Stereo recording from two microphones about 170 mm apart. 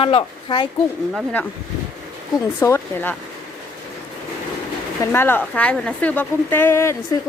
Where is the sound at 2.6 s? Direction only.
10° left (ahead or behind).